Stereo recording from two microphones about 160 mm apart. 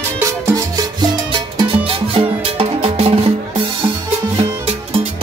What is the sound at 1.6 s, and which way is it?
Music, 35° right (ahead or behind).